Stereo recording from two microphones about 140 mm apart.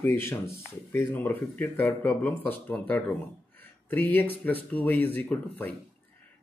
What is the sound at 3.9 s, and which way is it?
Speech, 15° left (ahead or behind).